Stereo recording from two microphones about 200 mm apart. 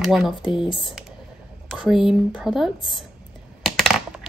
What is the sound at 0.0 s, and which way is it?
Speech, centre (ahead or behind).